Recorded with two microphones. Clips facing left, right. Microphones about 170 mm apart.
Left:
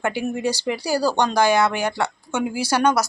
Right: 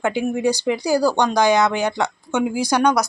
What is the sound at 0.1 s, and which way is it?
Speech, 15° right (ahead or behind).